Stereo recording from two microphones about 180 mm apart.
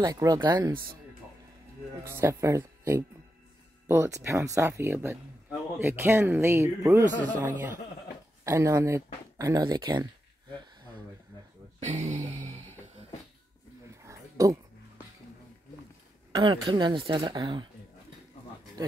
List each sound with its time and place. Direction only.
0.0 s a woman's voice: 20° right (ahead or behind)
2.0 s speech: 15° right (ahead or behind)
7.1 s a man's voice: 10° left (ahead or behind)
7.3 s speech: 10° right (ahead or behind)
11.8 s a sound: 40° right (ahead or behind)
14.0 s a sound: 20° right (ahead or behind)
16.3 s a woman's voice: 25° right (ahead or behind)